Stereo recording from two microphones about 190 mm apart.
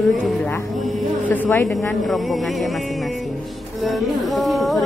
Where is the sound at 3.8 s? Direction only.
Centre (ahead or behind).